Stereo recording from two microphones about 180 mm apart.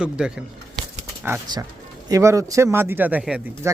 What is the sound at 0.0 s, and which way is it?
Speech, 5° right (ahead or behind).